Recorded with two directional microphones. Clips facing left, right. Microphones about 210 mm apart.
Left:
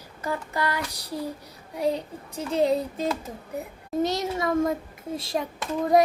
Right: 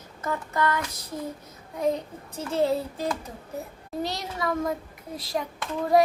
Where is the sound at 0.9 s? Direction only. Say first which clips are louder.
Left 2 dB; 35° left (ahead or behind).